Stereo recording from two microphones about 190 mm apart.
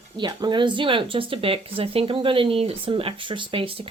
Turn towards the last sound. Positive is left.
turn(degrees=-30)  # may be behind; listen again after turning